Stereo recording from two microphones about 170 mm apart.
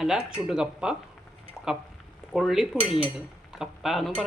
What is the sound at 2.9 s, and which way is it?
Speech, 30° left (ahead or behind).